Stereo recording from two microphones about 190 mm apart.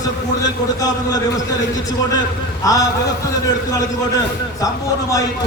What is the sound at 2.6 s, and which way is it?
Speech, 20° left (ahead or behind).